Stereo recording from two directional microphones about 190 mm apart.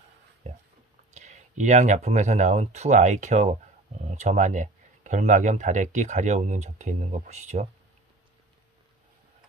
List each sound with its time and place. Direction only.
1.1 s speech: 40° right (ahead or behind)